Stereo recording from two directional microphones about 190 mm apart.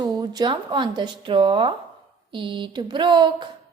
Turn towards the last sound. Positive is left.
turn(degrees=-25)  # may be behind; listen again after turning